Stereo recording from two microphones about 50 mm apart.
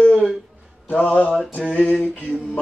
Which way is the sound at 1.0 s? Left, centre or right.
Left.